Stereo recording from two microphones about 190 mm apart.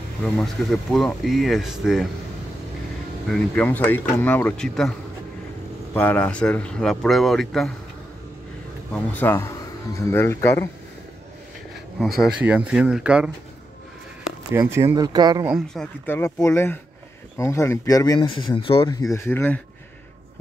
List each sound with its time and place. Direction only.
0.2 s speech: centre (ahead or behind)
3.3 s speech: 5° left (ahead or behind)
5.9 s speech: 10° left (ahead or behind)
8.9 s speech: 10° left (ahead or behind)
12.2 s speech: 5° right (ahead or behind)
14.5 s speech: 15° right (ahead or behind)
15.4 s speech: centre (ahead or behind); by 18.9 s 30° left (ahead or behind)
18.9 s speech: 20° left (ahead or behind)